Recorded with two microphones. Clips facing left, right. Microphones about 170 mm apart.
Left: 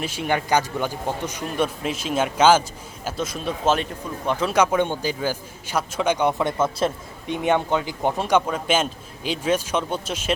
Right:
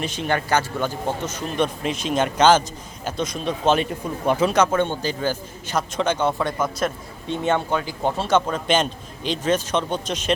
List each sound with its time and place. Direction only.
0.0 s a man's voice: 10° left (ahead or behind)
4.5 s a man's voice: 10° left (ahead or behind)
6.4 s a man's voice: 25° left (ahead or behind)
7.3 s a man's voice: 15° left (ahead or behind)